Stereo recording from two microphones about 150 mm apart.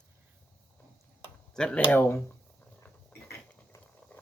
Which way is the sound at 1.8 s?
15° left (ahead or behind).